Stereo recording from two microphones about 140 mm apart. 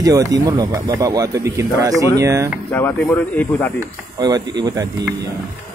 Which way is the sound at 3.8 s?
25° right (ahead or behind).